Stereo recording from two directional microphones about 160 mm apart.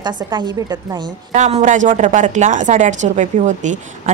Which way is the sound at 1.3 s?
45° right (ahead or behind).